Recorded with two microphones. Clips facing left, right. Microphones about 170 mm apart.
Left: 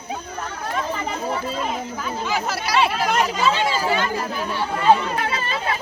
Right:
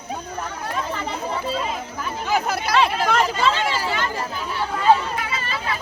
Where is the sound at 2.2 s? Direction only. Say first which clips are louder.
Right 4 dB; 55° right (ahead or behind).